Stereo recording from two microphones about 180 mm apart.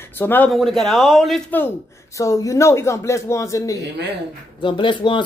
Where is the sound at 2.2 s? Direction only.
20° left (ahead or behind).